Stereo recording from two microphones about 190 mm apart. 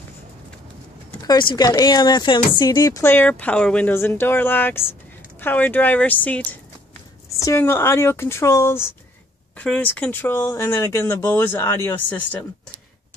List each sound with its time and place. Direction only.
1.2 s speech: 20° left (ahead or behind)